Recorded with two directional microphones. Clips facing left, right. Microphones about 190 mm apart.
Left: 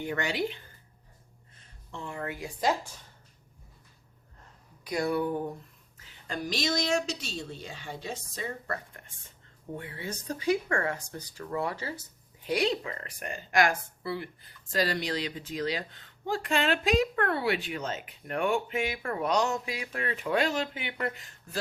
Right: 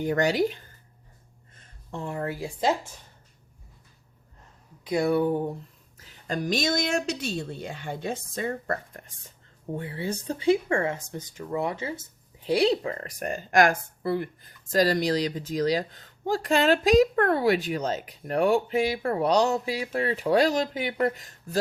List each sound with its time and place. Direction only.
0.0 s speech: 40° right (ahead or behind)
1.9 s speech: 40° right (ahead or behind)
4.8 s speech: 25° right (ahead or behind)
6.0 s speech: 40° right (ahead or behind)
9.7 s speech: 30° right (ahead or behind)